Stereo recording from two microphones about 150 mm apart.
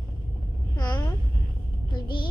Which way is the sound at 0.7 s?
30° left (ahead or behind).